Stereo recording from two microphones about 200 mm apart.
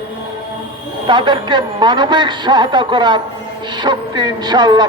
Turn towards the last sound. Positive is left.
turn(degrees=-20)  # may be behind; listen again after turning